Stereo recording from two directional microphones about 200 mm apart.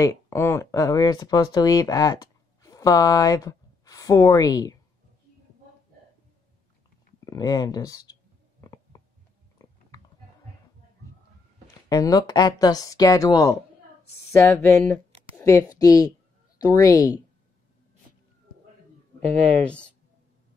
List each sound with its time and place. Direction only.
0.0 s speech: 10° left (ahead or behind)
7.2 s clicking: 20° left (ahead or behind)
9.6 s a sound: 15° left (ahead or behind)
11.9 s a woman's voice: 20° left (ahead or behind)